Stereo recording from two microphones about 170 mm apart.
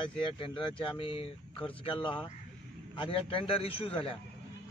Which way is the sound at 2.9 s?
30° left (ahead or behind).